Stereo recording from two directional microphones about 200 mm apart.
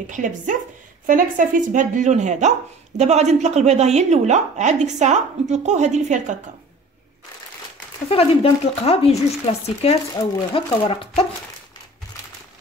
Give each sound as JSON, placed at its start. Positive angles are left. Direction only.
{"t": 0.1, "sound": "a woman's voice", "side_deg": -40}
{"t": 8.1, "sound": "speech", "side_deg": 30}